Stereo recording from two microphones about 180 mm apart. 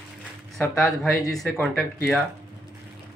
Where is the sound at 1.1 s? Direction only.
20° left (ahead or behind).